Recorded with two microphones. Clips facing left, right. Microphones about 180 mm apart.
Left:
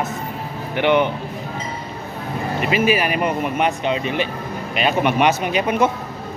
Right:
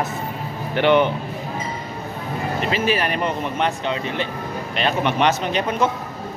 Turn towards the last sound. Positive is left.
turn(degrees=10)  # may be behind; listen again after turning